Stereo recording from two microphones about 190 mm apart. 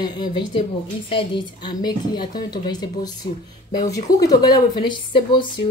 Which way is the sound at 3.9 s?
20° left (ahead or behind).